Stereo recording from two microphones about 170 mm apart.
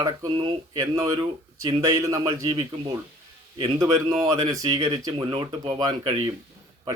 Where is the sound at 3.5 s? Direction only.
25° right (ahead or behind).